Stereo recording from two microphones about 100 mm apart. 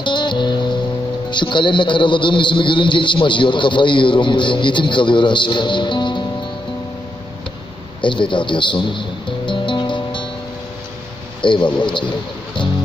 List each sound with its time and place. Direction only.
0.0 s music: 50° left (ahead or behind)
1.3 s a man's voice: 55° left (ahead or behind)
8.0 s a man's voice: 55° left (ahead or behind)
9.5 s music: 55° left (ahead or behind)
11.4 s a man's voice: 55° left (ahead or behind)